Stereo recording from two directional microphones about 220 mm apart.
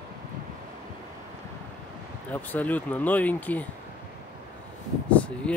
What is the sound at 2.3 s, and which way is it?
Speech, 10° left (ahead or behind).